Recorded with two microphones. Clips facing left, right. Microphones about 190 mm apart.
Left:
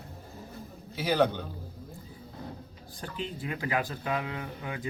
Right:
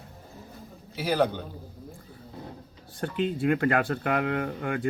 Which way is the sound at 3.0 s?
65° right (ahead or behind).